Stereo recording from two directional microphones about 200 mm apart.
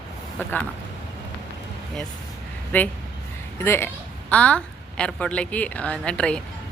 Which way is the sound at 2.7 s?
10° left (ahead or behind).